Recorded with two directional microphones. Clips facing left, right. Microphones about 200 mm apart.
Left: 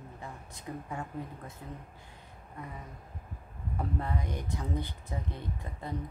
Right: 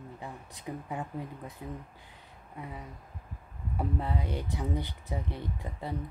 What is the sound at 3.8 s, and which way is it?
Speech, 15° right (ahead or behind).